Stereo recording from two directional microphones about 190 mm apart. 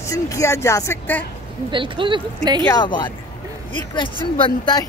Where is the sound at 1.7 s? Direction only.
25° right (ahead or behind).